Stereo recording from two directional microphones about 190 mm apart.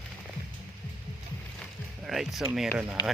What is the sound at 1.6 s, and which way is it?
Music, centre (ahead or behind).